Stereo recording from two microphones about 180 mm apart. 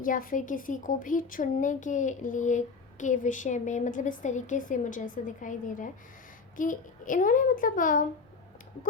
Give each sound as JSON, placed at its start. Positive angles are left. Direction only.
{"t": 0.0, "sound": "a woman's voice", "side_deg": 50}